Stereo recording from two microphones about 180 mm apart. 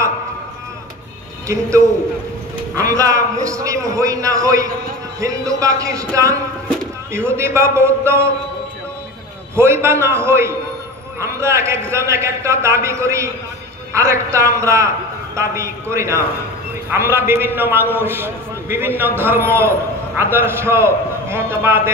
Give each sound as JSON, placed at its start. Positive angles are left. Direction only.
{"t": 1.5, "sound": "a man's voice", "side_deg": -15}
{"t": 9.6, "sound": "a man's voice", "side_deg": -15}